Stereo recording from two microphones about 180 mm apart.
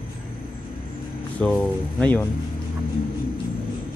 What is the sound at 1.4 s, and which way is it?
Speech, 5° left (ahead or behind).